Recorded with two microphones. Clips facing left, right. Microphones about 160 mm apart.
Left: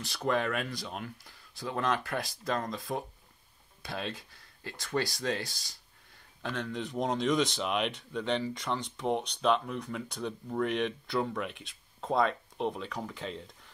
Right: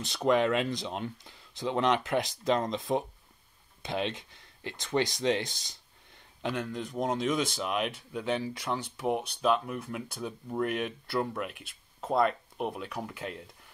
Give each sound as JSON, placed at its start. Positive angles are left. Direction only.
{"t": 0.0, "sound": "speech", "side_deg": -20}
{"t": 6.4, "sound": "speech", "side_deg": -10}